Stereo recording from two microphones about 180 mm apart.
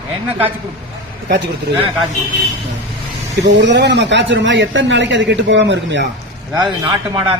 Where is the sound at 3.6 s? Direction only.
75° right (ahead or behind).